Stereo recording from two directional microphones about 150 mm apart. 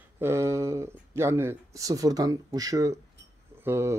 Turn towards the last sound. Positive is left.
turn(degrees=-15)  # may be behind; listen again after turning